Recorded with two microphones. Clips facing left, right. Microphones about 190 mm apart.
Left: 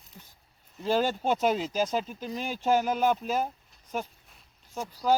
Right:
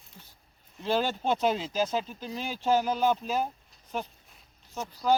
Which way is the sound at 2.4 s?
50° left (ahead or behind).